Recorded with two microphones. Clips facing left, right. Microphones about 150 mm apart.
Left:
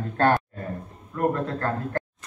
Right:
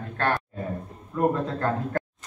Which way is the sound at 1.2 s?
Centre (ahead or behind).